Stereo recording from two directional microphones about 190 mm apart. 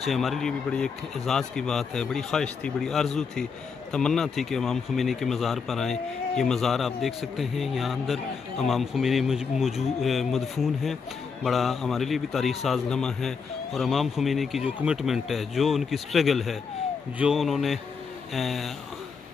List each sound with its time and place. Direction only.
0.0 s speech: centre (ahead or behind)